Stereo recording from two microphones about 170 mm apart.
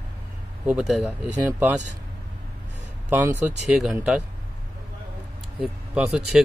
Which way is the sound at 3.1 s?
15° right (ahead or behind).